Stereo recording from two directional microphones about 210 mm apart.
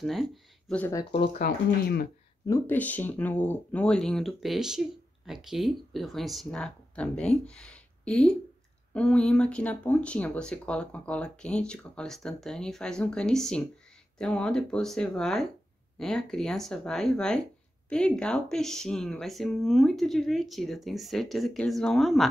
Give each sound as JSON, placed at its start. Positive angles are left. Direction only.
{"t": 0.0, "sound": "speech", "side_deg": 0}
{"t": 1.4, "sound": "speech", "side_deg": 50}
{"t": 2.4, "sound": "speech", "side_deg": 10}